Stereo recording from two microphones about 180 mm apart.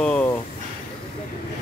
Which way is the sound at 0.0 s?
5° left (ahead or behind).